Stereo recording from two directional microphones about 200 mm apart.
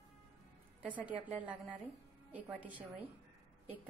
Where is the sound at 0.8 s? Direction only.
5° right (ahead or behind).